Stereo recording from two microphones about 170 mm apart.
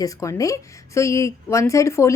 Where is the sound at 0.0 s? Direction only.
20° left (ahead or behind).